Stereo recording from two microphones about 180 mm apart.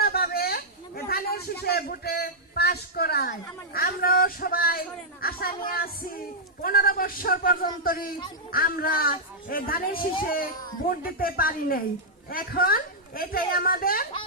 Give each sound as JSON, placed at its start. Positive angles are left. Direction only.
{"t": 0.0, "sound": "a man's voice", "side_deg": 60}